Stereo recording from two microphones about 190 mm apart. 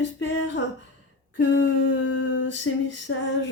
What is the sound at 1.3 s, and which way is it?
Female singing, 75° left (ahead or behind).